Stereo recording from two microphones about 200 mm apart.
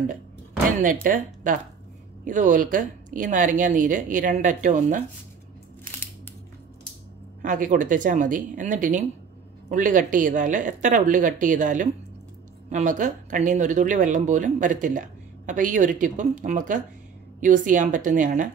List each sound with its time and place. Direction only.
0.7 s speech: 40° right (ahead or behind)
7.4 s speech: 40° right (ahead or behind)